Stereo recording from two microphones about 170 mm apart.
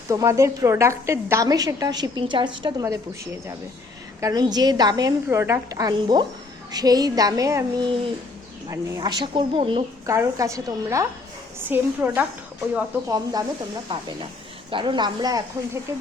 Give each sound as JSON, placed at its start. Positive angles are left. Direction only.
{"t": 0.1, "sound": "a woman's voice", "side_deg": -20}
{"t": 4.2, "sound": "a woman's voice", "side_deg": -20}
{"t": 9.0, "sound": "a woman's voice", "side_deg": -25}
{"t": 10.1, "sound": "a woman's voice", "side_deg": -20}
{"t": 13.1, "sound": "a woman's voice", "side_deg": -20}